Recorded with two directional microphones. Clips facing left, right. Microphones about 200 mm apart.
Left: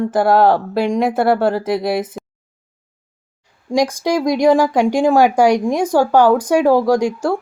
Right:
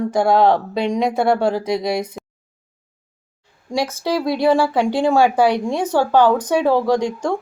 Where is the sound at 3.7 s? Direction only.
15° left (ahead or behind).